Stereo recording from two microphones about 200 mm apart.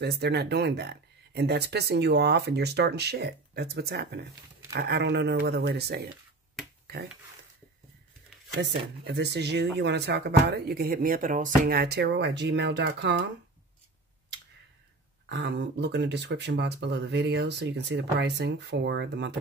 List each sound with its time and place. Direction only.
0.0 s speech: 55° right (ahead or behind)
8.5 s speech: 55° right (ahead or behind)
15.2 s speech: 60° right (ahead or behind)